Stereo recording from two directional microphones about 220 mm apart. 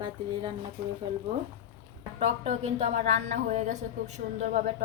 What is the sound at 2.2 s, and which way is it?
A woman's voice, 30° right (ahead or behind).